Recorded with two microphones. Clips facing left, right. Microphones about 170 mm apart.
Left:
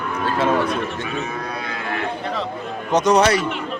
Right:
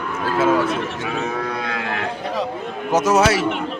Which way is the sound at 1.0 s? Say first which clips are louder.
Right 3 dB; 85° right.